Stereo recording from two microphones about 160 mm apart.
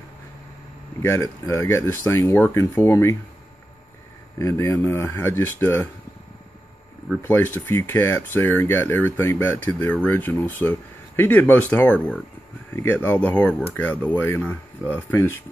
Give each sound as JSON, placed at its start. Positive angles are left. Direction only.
{"t": 1.0, "sound": "speech", "side_deg": 20}
{"t": 4.4, "sound": "speech", "side_deg": 20}
{"t": 7.2, "sound": "speech", "side_deg": 15}